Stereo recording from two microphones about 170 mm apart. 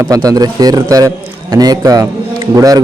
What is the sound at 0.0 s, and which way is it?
A man's voice, 20° right (ahead or behind).